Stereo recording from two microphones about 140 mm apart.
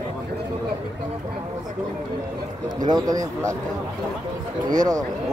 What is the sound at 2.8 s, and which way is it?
Speech, 30° right (ahead or behind).